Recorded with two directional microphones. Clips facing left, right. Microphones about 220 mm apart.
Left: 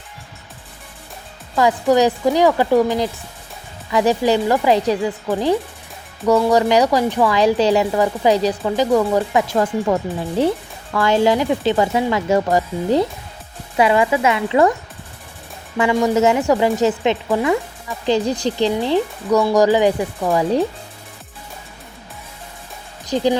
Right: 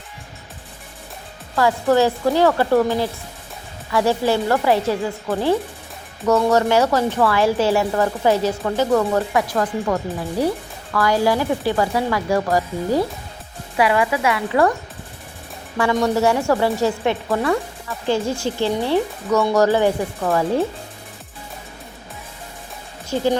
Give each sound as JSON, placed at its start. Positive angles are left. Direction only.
{"t": 1.5, "sound": "speech", "side_deg": 15}
{"t": 15.8, "sound": "speech", "side_deg": 10}
{"t": 23.0, "sound": "speech", "side_deg": 15}